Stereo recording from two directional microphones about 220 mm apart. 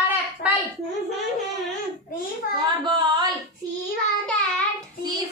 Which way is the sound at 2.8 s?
20° right (ahead or behind).